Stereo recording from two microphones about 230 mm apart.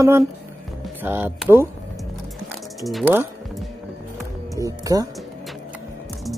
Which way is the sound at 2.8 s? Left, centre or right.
Centre.